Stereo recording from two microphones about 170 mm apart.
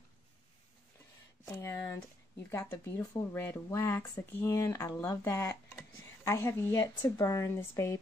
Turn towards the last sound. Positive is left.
turn(degrees=15)  # may be behind; listen again after turning